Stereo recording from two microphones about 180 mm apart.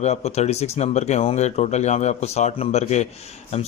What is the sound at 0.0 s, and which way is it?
Speech, 35° left (ahead or behind).